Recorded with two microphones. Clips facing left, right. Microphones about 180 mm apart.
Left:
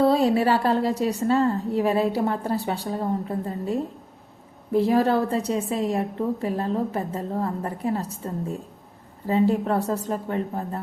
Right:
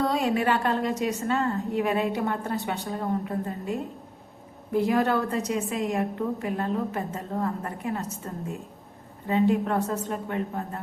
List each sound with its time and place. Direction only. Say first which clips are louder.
0.0 s a woman's voice: left 5 dB; 35° left (ahead or behind)